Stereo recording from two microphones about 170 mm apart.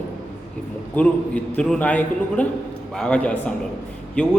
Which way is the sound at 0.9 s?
10° left (ahead or behind).